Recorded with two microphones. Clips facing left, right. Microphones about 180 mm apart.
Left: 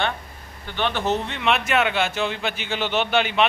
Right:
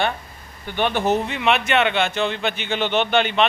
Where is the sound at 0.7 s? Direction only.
15° right (ahead or behind).